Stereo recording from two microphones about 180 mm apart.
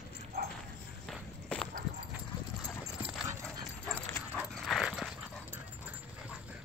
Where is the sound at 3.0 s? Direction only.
10° right (ahead or behind).